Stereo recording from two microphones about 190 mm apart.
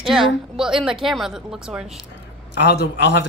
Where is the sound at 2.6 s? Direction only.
65° left (ahead or behind).